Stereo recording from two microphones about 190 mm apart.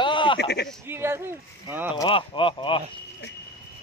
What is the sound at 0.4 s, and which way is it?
Speech, 60° left (ahead or behind).